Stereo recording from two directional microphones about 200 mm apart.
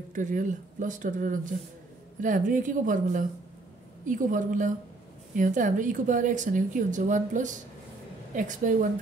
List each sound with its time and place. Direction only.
0.1 s a woman's voice: 40° right (ahead or behind)